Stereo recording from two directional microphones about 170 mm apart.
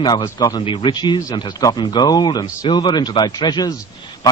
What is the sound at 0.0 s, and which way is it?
A man's voice, 25° left (ahead or behind).